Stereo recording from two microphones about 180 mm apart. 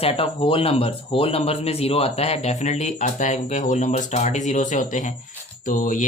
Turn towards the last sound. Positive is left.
turn(degrees=45)  # may be behind; listen again after turning